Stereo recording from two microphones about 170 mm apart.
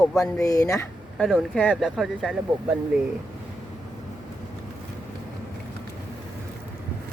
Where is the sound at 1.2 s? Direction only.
Centre (ahead or behind).